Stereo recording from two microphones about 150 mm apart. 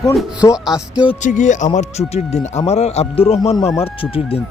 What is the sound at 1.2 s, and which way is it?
A man's voice, 55° left (ahead or behind).